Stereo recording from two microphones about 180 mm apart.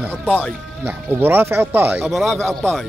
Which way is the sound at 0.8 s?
10° right (ahead or behind).